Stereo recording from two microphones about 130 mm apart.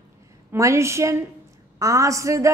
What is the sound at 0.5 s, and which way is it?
Speech, 25° right (ahead or behind).